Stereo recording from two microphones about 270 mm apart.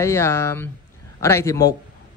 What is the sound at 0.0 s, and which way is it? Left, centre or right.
Speech, centre.